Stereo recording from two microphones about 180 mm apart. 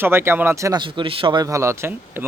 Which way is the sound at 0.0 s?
15° right (ahead or behind).